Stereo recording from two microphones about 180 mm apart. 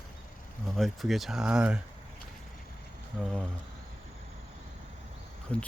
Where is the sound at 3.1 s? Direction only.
Centre (ahead or behind).